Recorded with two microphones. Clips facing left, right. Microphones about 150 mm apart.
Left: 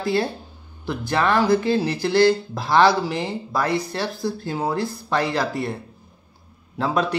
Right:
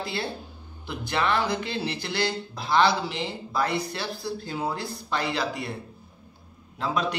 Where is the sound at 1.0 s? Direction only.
45° left (ahead or behind).